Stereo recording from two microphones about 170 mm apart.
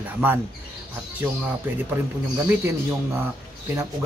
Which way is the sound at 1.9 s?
15° right (ahead or behind).